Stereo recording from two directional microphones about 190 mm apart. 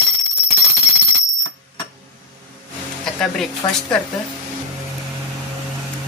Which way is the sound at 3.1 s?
5° left (ahead or behind).